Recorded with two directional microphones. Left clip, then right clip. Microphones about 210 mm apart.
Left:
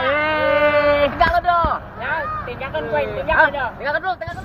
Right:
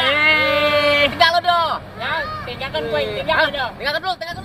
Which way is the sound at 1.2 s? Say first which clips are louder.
Right 1 dB; 20° right (ahead or behind).